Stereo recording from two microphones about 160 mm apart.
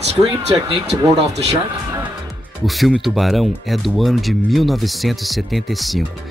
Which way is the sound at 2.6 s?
Centre (ahead or behind).